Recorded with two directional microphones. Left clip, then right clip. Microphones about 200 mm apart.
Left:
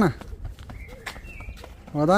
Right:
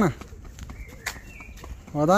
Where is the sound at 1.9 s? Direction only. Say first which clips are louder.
Even; 10° left (ahead or behind).